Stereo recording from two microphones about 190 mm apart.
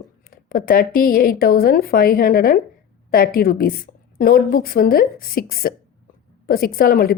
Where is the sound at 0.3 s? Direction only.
50° left (ahead or behind).